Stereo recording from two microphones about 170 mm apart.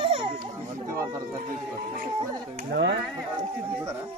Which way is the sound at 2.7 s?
90° right.